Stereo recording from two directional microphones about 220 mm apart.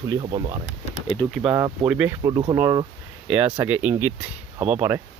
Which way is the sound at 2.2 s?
20° right (ahead or behind).